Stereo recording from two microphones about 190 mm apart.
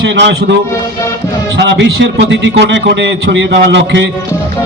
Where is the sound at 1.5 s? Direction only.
65° right (ahead or behind).